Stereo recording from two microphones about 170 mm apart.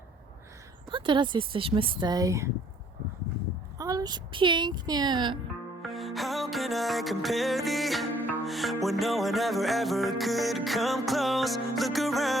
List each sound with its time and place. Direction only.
0.9 s speech: 30° right (ahead or behind)
3.8 s speech: 20° right (ahead or behind)
5.8 s music: centre (ahead or behind)